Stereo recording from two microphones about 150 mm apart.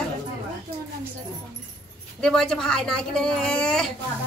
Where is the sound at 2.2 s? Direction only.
5° left (ahead or behind).